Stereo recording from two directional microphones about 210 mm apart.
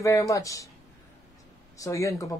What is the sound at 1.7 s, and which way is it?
Speech, 15° left (ahead or behind).